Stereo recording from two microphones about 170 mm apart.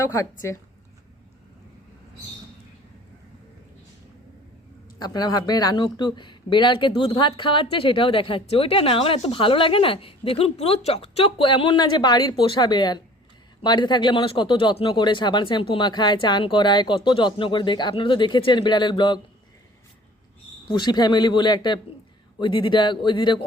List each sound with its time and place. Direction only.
0.0 s speech: 15° left (ahead or behind)
4.9 s speech: 25° left (ahead or behind)
20.7 s speech: 25° left (ahead or behind)